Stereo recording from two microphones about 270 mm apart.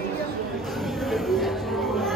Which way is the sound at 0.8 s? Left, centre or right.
Centre.